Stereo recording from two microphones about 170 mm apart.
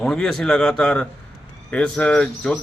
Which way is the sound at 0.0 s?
5° left (ahead or behind).